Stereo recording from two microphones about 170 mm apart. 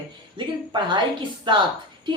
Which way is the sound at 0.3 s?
30° right (ahead or behind).